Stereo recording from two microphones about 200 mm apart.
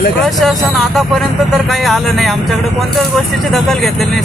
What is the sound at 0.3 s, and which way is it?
Speech, centre (ahead or behind).